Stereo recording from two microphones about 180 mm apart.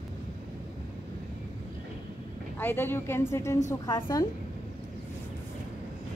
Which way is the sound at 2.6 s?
10° left (ahead or behind).